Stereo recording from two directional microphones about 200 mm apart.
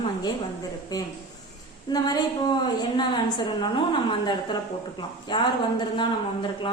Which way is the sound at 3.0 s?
20° left (ahead or behind).